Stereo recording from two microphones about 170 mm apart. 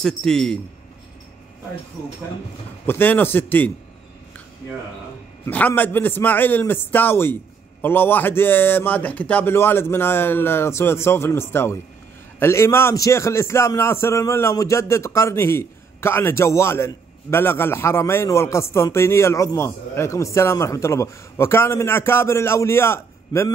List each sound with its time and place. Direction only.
0.0 s a man's voice: 5° left (ahead or behind)
2.9 s a man's voice: 10° left (ahead or behind)
5.4 s a man's voice: 10° left (ahead or behind)